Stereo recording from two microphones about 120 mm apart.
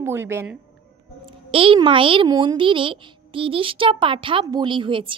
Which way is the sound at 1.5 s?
50° right (ahead or behind).